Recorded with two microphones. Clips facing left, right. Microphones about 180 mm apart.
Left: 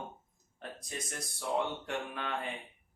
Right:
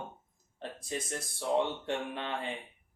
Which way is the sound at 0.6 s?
30° right (ahead or behind).